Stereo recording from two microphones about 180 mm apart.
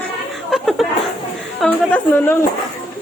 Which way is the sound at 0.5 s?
Centre (ahead or behind).